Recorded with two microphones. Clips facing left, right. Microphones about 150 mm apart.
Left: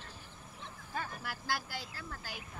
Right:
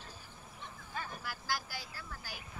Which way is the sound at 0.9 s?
60° left (ahead or behind).